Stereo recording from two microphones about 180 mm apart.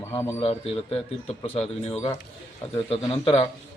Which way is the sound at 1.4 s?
35° left (ahead or behind).